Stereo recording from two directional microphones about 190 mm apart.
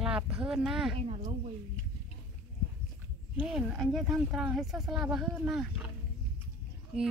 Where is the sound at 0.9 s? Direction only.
35° right (ahead or behind).